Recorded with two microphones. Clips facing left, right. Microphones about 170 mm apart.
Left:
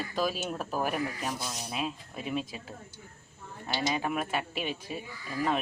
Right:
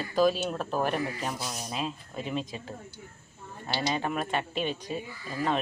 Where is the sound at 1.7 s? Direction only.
5° left (ahead or behind).